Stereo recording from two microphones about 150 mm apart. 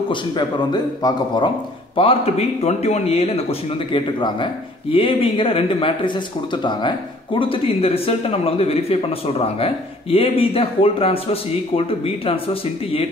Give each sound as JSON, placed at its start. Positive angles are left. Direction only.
{"t": 0.1, "sound": "a man's voice", "side_deg": 30}
{"t": 10.1, "sound": "a man's voice", "side_deg": 40}